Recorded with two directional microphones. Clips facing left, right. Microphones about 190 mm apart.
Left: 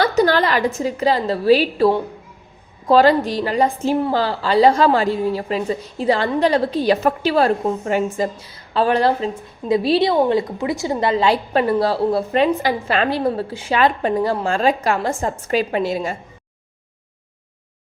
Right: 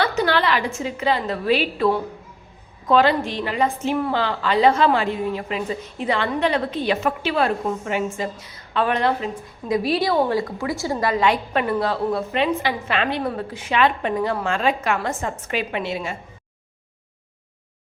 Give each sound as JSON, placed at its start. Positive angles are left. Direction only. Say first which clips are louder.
{"t": 0.2, "sound": "a woman's voice", "louder": "left 4 dB", "side_deg": 40}